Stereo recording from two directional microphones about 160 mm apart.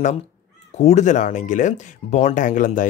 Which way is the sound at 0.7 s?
45° left (ahead or behind).